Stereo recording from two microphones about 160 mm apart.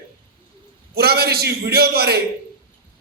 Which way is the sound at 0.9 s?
80° right.